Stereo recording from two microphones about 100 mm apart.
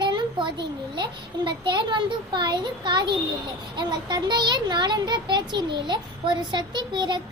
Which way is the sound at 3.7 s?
50° right (ahead or behind).